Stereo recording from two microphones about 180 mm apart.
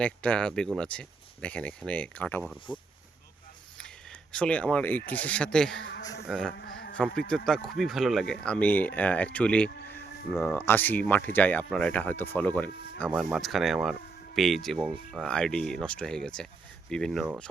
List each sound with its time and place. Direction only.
0.0 s speech: 5° left (ahead or behind)
3.8 s speech: 5° left (ahead or behind)
6.6 s a man's voice: 60° left (ahead or behind)
7.2 s speech: 5° left (ahead or behind)
13.1 s speech: 5° right (ahead or behind)